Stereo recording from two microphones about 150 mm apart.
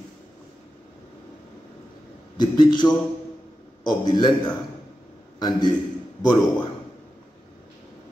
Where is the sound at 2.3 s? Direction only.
30° left (ahead or behind).